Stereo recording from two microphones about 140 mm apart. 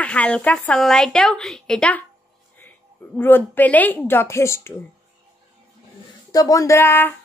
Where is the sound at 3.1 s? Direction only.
15° left (ahead or behind).